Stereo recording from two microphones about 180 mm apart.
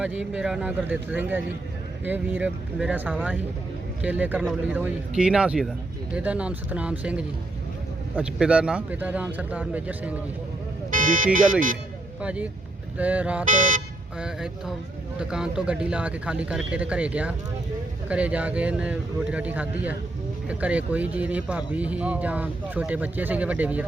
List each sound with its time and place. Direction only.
0.0 s speech: 5° right (ahead or behind)
10.9 s car alarm: 50° right (ahead or behind)
12.2 s speech: 5° right (ahead or behind)
13.5 s speech: 45° right (ahead or behind)
14.2 s speech: 5° right (ahead or behind)